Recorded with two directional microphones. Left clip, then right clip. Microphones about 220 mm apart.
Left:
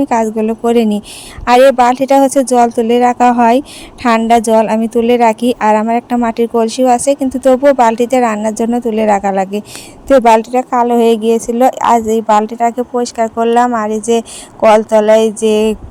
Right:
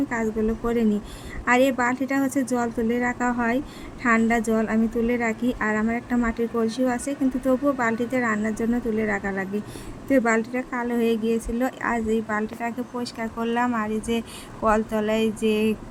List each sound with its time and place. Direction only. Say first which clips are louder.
0.1 s a woman's voice: left 12 dB; 30° left (ahead or behind)